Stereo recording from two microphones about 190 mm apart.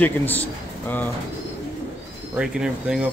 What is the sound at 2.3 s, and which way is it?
Speech, 5° right (ahead or behind).